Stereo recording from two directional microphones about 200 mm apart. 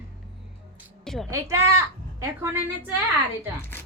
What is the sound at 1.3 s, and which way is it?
A woman's voice, 15° right (ahead or behind).